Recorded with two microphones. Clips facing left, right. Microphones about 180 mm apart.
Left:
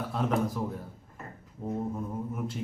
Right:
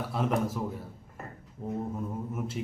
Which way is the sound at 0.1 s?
5° right (ahead or behind).